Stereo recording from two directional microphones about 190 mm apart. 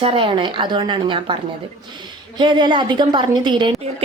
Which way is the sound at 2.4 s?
25° right (ahead or behind).